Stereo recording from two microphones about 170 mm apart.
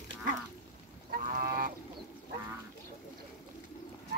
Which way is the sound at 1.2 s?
50° right (ahead or behind).